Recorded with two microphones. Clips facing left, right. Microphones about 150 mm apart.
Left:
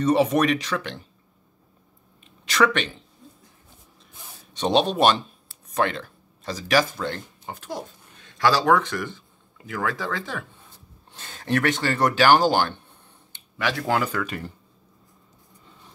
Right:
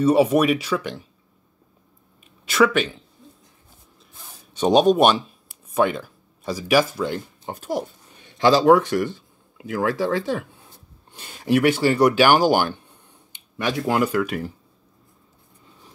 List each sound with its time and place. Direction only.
0.0 s speech: 10° right (ahead or behind)
2.4 s speech: 5° right (ahead or behind)
4.6 s speech: 10° right (ahead or behind)